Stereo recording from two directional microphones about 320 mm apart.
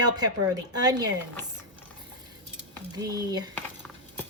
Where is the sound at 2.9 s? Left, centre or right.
Centre.